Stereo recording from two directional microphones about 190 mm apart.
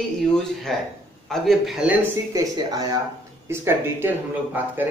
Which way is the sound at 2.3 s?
20° right (ahead or behind).